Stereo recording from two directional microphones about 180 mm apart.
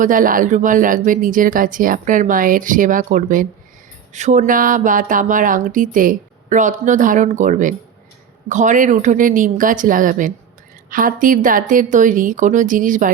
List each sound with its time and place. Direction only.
0.0 s speech: 50° right (ahead or behind)